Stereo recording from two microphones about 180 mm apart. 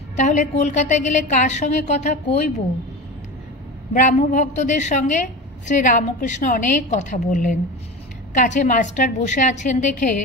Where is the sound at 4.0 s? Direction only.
45° left (ahead or behind).